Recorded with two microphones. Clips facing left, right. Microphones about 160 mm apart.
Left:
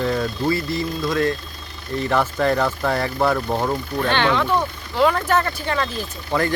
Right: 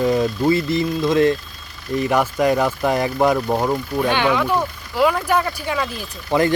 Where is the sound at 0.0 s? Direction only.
15° right (ahead or behind).